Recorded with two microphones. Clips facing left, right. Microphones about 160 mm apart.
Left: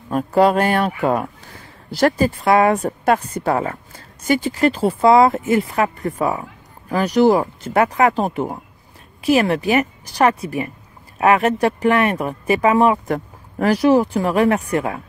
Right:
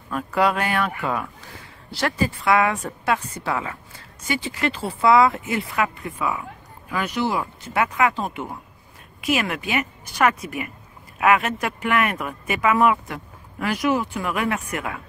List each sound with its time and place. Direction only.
0.1 s speech: 35° left (ahead or behind)